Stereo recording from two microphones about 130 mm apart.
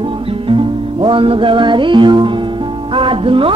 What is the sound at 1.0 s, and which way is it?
Speech, 45° right (ahead or behind).